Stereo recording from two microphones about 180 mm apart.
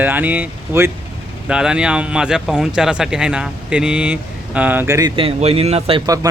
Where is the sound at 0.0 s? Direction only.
10° right (ahead or behind); by 6.0 s 35° right (ahead or behind).